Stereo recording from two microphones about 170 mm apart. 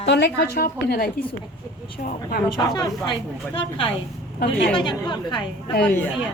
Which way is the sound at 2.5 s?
25° left (ahead or behind).